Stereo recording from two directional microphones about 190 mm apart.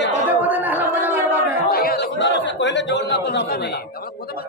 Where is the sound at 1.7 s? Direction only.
50° left (ahead or behind).